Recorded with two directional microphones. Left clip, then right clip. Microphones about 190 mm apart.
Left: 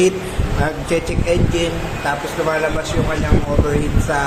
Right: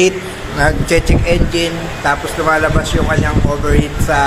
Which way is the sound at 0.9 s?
25° right (ahead or behind).